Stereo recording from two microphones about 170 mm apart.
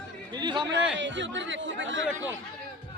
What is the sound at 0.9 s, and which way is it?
Speech, 90° right.